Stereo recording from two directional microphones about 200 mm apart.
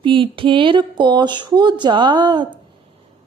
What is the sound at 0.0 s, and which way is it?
A woman's voice, 25° right (ahead or behind).